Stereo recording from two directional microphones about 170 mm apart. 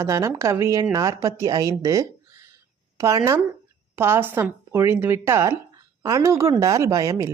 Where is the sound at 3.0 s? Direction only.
20° right (ahead or behind).